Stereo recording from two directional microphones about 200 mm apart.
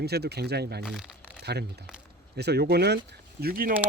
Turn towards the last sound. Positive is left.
turn(degrees=-45)  # may be behind; listen again after turning